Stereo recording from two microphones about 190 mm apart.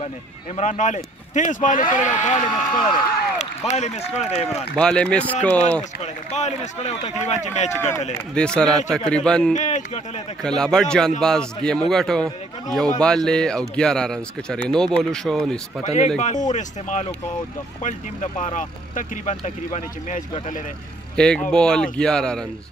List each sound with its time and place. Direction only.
0.6 s speech: 40° left (ahead or behind)
4.5 s speech: 5° left (ahead or behind)
6.3 s speech: 35° left (ahead or behind)
8.4 s speech: 5° left (ahead or behind)
9.5 s speech: 40° left (ahead or behind)
10.4 s speech: 5° left (ahead or behind)
15.8 s speech: 35° left (ahead or behind)
21.2 s speech: 5° left (ahead or behind)